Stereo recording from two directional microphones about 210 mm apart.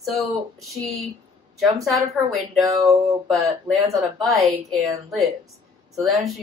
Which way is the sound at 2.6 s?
15° right (ahead or behind).